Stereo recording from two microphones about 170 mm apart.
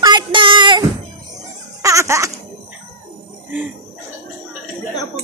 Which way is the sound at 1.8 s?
15° right (ahead or behind).